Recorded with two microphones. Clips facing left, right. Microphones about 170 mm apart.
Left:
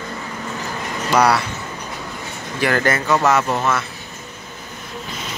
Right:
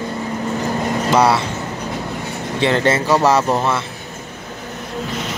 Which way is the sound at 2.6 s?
25° right (ahead or behind).